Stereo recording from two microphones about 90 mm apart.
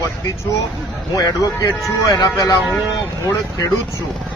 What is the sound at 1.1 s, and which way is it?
Speech, 40° left (ahead or behind).